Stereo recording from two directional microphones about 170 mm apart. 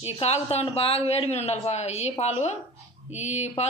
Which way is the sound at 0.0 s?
35° left (ahead or behind).